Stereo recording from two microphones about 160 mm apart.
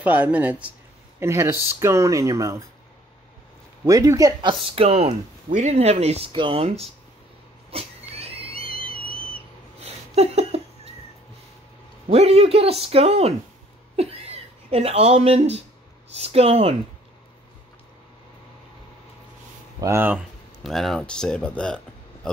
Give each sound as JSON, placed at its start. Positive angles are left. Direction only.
{"t": 0.0, "sound": "speech", "side_deg": -10}
{"t": 3.8, "sound": "speech", "side_deg": -20}
{"t": 7.7, "sound": "cat", "side_deg": -40}
{"t": 9.8, "sound": "a sound", "side_deg": -40}
{"t": 12.1, "sound": "speech", "side_deg": -40}
{"t": 19.8, "sound": "speech", "side_deg": -15}
{"t": 20.6, "sound": "speech", "side_deg": 0}